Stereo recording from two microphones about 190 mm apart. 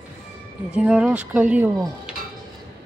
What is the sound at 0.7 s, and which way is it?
Speech, 5° right (ahead or behind).